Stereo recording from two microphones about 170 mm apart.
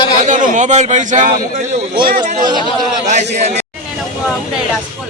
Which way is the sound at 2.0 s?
60° right (ahead or behind).